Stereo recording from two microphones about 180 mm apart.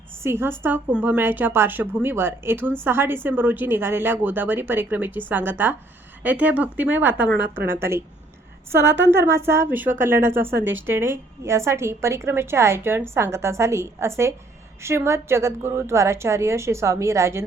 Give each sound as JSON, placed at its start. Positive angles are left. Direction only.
{"t": 0.2, "sound": "a woman's voice", "side_deg": -15}